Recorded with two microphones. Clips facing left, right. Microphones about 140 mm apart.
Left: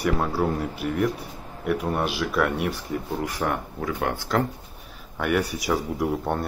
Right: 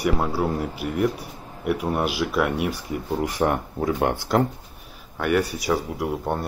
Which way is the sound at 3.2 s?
25° right (ahead or behind).